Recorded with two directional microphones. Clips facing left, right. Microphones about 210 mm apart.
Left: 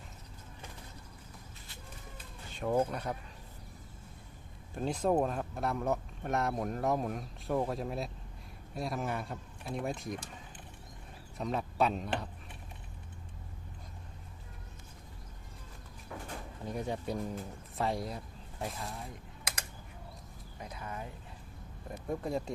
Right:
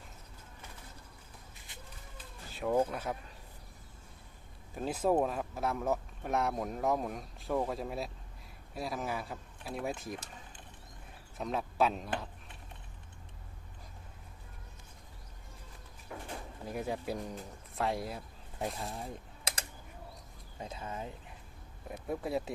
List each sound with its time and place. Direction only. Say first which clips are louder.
2.5 s speech: even; centre (ahead or behind)
4.7 s speech: even; 5° right (ahead or behind)
11.3 s speech: even; centre (ahead or behind)
16.6 s speech: even; 5° right (ahead or behind)
20.6 s speech: right 2 dB; 25° right (ahead or behind)
21.8 s speech: even; 5° right (ahead or behind)